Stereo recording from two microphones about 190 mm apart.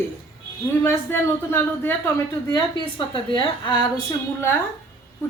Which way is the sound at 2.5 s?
25° left (ahead or behind).